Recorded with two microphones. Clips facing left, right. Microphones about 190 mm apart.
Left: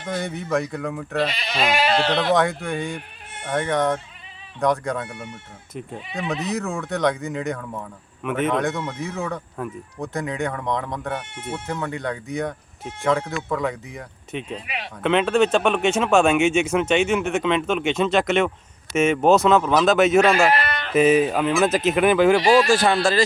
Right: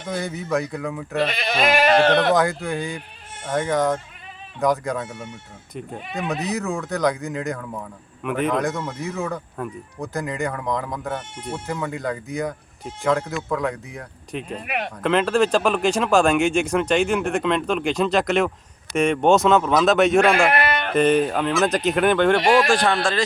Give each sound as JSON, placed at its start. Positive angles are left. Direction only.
{"t": 0.0, "sound": "speech", "side_deg": 0}
{"t": 1.3, "sound": "speech", "side_deg": -55}
{"t": 2.3, "sound": "speech", "side_deg": 0}
{"t": 6.1, "sound": "speech", "side_deg": 0}
{"t": 14.5, "sound": "speech", "side_deg": -55}
{"t": 15.0, "sound": "speech", "side_deg": 0}
{"t": 20.5, "sound": "bleat", "side_deg": -55}
{"t": 20.9, "sound": "speech", "side_deg": 5}